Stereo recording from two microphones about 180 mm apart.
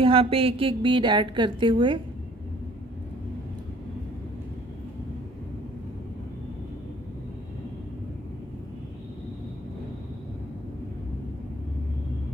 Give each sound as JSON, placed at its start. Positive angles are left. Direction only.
{"t": 0.0, "sound": "a woman's voice", "side_deg": -30}